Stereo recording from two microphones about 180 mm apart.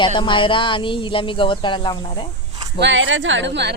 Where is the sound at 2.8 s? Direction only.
90° right.